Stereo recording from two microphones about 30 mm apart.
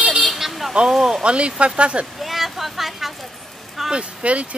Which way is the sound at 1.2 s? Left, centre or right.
Right.